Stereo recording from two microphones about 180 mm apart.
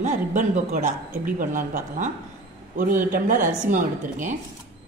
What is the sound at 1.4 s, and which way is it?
A man's voice, 45° right (ahead or behind).